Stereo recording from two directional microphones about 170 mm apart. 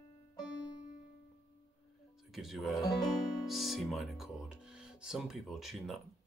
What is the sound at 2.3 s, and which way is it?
Speech, centre (ahead or behind).